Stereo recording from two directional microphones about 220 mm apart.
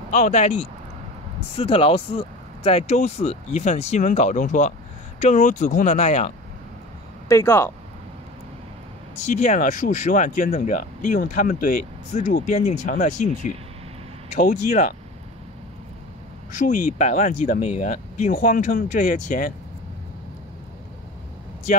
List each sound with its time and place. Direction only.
0.1 s speech: 30° left (ahead or behind)
7.2 s speech: 15° left (ahead or behind)
9.1 s speech: 30° left (ahead or behind)
16.5 s speech: 35° left (ahead or behind)